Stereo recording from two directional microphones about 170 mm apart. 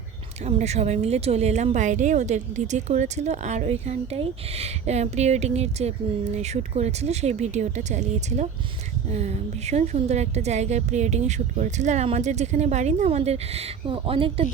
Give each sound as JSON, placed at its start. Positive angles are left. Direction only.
{"t": 0.4, "sound": "speech", "side_deg": -40}